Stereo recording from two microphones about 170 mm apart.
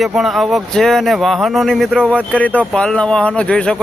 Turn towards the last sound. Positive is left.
turn(degrees=5)  # may be behind; listen again after turning